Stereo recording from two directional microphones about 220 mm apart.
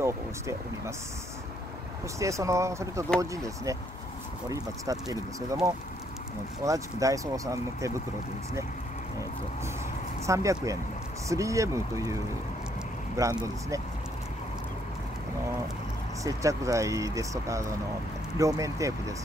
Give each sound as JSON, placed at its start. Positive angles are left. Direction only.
{"t": 0.0, "sound": "speech", "side_deg": -15}
{"t": 2.1, "sound": "speech", "side_deg": -15}
{"t": 6.6, "sound": "speech", "side_deg": -15}
{"t": 10.2, "sound": "speech", "side_deg": -15}
{"t": 16.3, "sound": "speech", "side_deg": -15}